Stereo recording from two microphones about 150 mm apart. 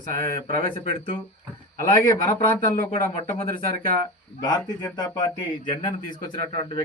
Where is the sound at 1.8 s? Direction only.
20° left (ahead or behind).